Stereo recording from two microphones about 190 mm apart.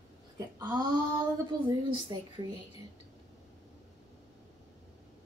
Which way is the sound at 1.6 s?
20° right (ahead or behind).